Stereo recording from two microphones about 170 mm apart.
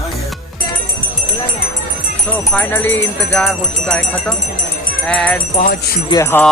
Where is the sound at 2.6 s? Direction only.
15° left (ahead or behind).